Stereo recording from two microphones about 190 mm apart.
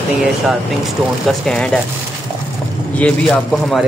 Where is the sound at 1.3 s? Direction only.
Centre (ahead or behind).